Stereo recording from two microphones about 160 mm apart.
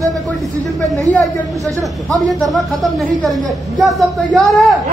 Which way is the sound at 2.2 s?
Centre (ahead or behind).